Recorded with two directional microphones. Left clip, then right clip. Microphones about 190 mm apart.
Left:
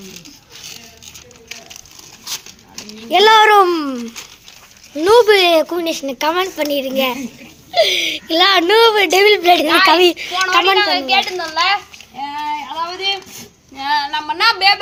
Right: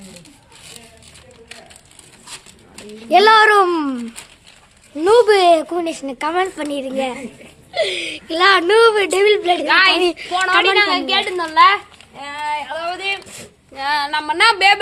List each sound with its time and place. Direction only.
3.1 s a child's voice: 15° right (ahead or behind)
5.0 s a woman's voice: centre (ahead or behind)
10.3 s a woman's voice: 65° right (ahead or behind)
10.8 s a woman's voice: 50° right (ahead or behind)
12.4 s a sound: 50° right (ahead or behind)
13.7 s female singing: 55° right (ahead or behind)